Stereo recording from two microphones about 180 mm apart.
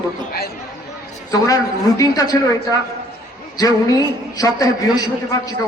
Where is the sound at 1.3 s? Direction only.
20° left (ahead or behind).